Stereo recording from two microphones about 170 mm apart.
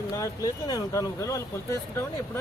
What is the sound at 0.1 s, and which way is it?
Speech, 20° left (ahead or behind).